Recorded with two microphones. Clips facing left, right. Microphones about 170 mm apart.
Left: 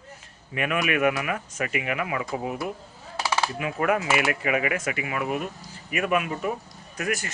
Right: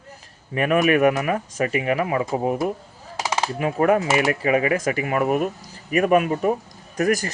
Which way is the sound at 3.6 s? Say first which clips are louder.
Right 9 dB; 35° right (ahead or behind).